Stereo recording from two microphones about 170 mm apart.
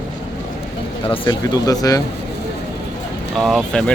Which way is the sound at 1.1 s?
30° left (ahead or behind).